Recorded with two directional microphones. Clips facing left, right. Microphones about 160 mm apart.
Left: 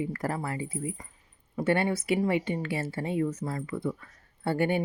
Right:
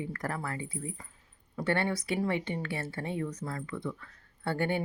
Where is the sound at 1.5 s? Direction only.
25° left (ahead or behind).